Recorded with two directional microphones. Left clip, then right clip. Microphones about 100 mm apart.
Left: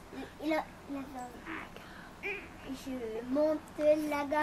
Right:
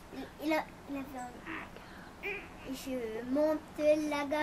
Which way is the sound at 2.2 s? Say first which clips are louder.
Left 1 dB; 15° left (ahead or behind).